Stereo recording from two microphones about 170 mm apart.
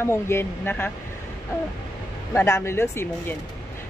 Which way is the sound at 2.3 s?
15° left (ahead or behind).